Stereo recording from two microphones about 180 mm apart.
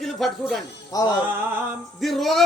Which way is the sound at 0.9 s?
20° left (ahead or behind).